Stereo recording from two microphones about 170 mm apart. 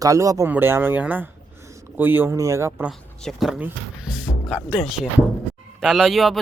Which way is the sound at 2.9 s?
Centre (ahead or behind).